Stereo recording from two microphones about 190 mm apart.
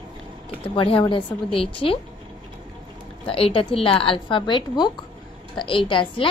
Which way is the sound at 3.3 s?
30° left (ahead or behind).